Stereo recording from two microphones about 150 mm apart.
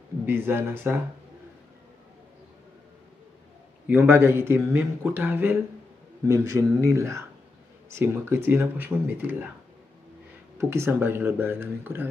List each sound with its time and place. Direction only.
0.2 s speech: 15° right (ahead or behind)
3.8 s speech: 15° right (ahead or behind)
10.6 s speech: 15° right (ahead or behind)